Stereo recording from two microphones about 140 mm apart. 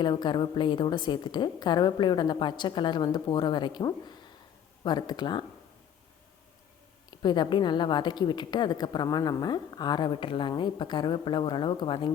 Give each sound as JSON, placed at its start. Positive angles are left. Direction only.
{"t": 0.0, "sound": "a woman's voice", "side_deg": 30}
{"t": 7.2, "sound": "a woman's voice", "side_deg": 30}